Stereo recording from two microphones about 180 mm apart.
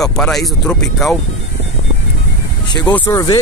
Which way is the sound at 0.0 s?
Centre (ahead or behind).